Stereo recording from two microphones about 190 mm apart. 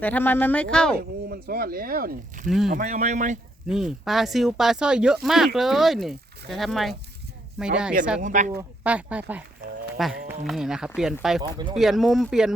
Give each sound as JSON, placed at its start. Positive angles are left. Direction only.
{"t": 0.0, "sound": "speech", "side_deg": 10}
{"t": 0.9, "sound": "speech", "side_deg": -50}
{"t": 2.5, "sound": "speech", "side_deg": 0}
{"t": 2.7, "sound": "speech", "side_deg": -45}
{"t": 3.7, "sound": "speech", "side_deg": 0}
{"t": 8.2, "sound": "speech", "side_deg": -40}
{"t": 8.8, "sound": "speech", "side_deg": -5}
{"t": 11.4, "sound": "speech", "side_deg": -20}
{"t": 11.8, "sound": "speech", "side_deg": 0}